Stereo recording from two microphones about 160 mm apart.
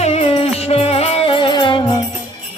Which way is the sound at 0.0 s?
40° left (ahead or behind).